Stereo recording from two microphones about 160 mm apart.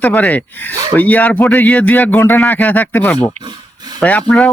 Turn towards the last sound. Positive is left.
turn(degrees=10)  # may be behind; listen again after turning